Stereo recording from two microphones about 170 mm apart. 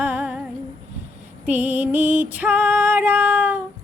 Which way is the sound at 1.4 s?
10° right (ahead or behind).